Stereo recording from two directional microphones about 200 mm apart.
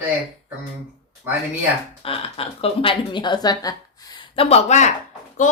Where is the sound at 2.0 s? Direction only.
30° left (ahead or behind).